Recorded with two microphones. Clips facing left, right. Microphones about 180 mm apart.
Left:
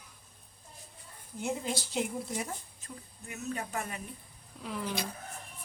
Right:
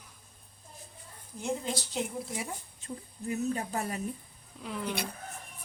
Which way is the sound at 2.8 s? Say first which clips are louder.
Right 9 dB; 35° right (ahead or behind).